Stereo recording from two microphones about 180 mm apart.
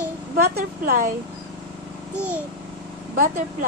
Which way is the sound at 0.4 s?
55° right (ahead or behind).